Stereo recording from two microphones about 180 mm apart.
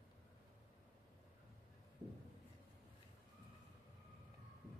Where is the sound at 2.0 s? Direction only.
5° left (ahead or behind).